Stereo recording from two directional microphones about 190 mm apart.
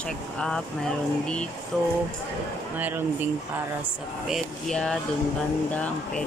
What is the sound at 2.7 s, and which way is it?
Speech, 10° right (ahead or behind).